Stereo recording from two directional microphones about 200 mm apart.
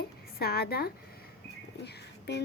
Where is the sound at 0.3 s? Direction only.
50° left (ahead or behind).